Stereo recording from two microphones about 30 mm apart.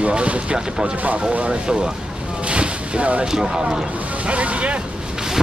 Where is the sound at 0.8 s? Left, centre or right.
Right.